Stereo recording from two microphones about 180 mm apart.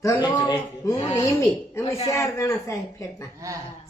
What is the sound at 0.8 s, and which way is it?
Speech, 20° left (ahead or behind).